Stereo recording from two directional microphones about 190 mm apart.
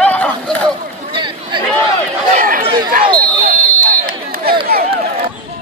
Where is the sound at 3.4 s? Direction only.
45° right (ahead or behind).